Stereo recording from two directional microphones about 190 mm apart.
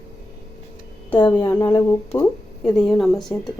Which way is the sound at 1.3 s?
15° left (ahead or behind).